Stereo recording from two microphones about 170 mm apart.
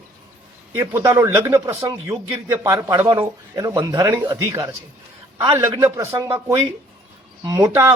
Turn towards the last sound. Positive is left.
turn(degrees=-15)  # may be behind; listen again after turning